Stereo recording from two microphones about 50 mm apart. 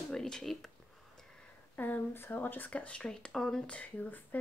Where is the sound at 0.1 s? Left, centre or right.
Centre.